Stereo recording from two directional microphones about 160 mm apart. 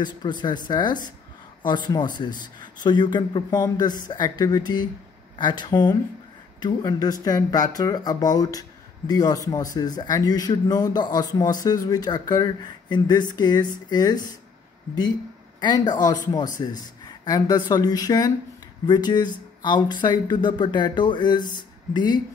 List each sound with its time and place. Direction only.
0.0 s speech: 30° left (ahead or behind)
15.6 s speech: 25° left (ahead or behind)